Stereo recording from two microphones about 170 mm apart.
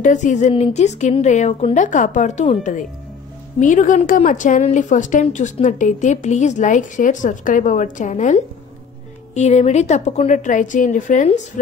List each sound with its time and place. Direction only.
0.0 s a woman's voice: 45° left (ahead or behind)